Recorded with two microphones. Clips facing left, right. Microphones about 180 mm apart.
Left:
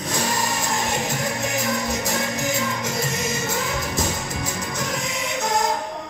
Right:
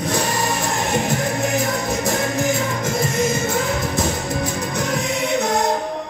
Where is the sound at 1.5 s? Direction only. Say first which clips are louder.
Right 3 dB; 55° right (ahead or behind).